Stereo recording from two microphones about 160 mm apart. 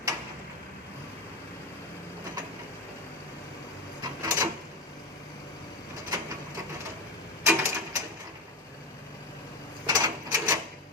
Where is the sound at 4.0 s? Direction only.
20° right (ahead or behind).